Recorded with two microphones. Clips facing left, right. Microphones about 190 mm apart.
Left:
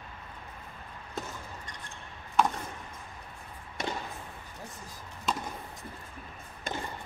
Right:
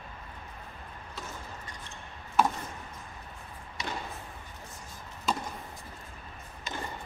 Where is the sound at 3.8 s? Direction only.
50° left (ahead or behind).